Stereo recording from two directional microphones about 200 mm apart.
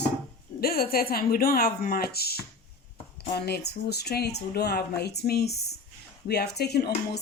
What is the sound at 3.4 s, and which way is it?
Speech, 55° left (ahead or behind).